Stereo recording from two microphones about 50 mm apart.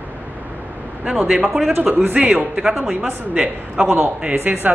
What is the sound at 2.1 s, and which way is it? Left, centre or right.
Speech, right.